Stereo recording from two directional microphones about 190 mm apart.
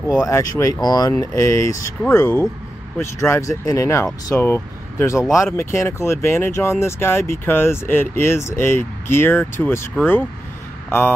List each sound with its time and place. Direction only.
0.0 s speech: 15° left (ahead or behind)